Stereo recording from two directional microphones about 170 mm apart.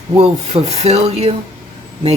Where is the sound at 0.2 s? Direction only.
40° right (ahead or behind).